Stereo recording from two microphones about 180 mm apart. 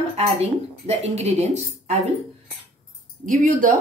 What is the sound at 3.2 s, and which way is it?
Speech, 50° right (ahead or behind).